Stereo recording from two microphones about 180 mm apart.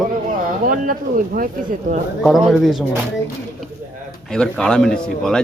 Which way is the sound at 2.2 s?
Centre (ahead or behind).